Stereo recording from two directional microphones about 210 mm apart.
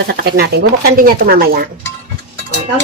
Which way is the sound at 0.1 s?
50° right (ahead or behind).